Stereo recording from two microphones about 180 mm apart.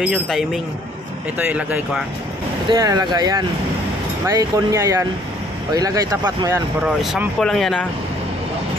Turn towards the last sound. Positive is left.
turn(degrees=0)  # may be behind; listen again after turning